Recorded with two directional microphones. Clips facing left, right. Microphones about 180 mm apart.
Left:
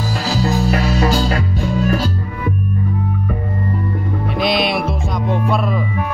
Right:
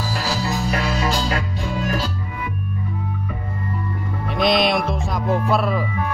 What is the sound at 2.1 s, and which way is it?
Music, 45° left (ahead or behind).